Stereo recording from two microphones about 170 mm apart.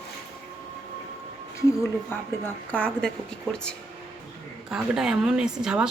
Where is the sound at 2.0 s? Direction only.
10° left (ahead or behind).